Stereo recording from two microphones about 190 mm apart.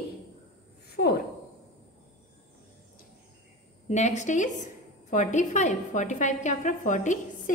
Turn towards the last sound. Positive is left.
turn(degrees=40)  # may be behind; listen again after turning